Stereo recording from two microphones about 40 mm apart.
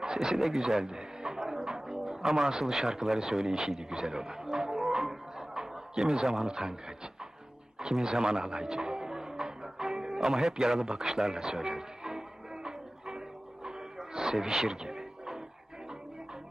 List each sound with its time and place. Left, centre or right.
0.0 s a sound: centre
2.6 s a man's voice: centre
8.9 s music: centre
10.9 s speech: centre
12.6 s music: centre
13.7 s a sound: centre